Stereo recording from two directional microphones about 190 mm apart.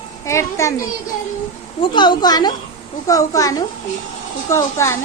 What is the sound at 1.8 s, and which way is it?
A woman's voice, 25° left (ahead or behind).